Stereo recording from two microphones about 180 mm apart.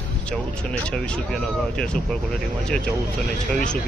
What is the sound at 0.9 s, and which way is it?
Speech, 5° left (ahead or behind).